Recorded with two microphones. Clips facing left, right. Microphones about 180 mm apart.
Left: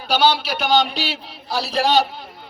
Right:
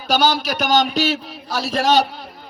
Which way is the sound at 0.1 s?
45° right (ahead or behind).